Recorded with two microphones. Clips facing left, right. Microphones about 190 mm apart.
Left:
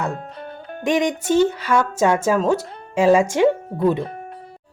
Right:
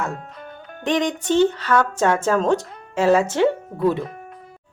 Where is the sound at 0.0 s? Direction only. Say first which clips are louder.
Left 2 dB; 35° left (ahead or behind).